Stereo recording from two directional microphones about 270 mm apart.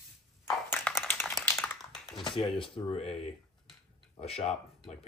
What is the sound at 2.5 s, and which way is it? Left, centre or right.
Speech, centre.